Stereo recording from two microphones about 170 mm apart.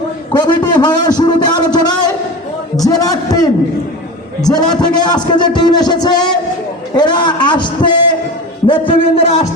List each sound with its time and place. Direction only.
0.3 s a man's voice: 25° left (ahead or behind)
2.7 s a sound: 20° left (ahead or behind)
4.4 s music: 20° left (ahead or behind)
8.6 s a man's voice: 30° left (ahead or behind)